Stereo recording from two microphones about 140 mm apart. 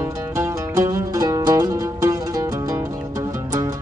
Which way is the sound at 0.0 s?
20° right (ahead or behind).